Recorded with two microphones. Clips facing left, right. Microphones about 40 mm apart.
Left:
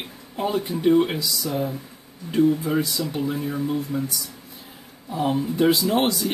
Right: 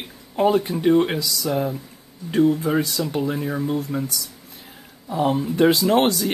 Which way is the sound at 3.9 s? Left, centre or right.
Right.